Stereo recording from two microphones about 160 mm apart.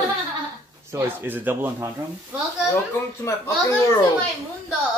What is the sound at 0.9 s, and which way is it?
Speech, 15° right (ahead or behind).